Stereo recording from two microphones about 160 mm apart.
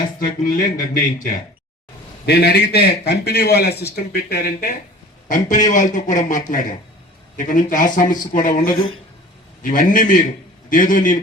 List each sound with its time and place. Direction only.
0.2 s music: 60° left (ahead or behind)
2.2 s a man's voice: 90° left
4.1 s speech: 75° left (ahead or behind)
5.3 s speech: 50° left (ahead or behind)
7.3 s music: 55° left (ahead or behind)